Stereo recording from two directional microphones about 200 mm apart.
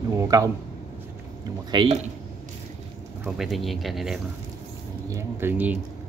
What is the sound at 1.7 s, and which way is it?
Speech, 30° right (ahead or behind).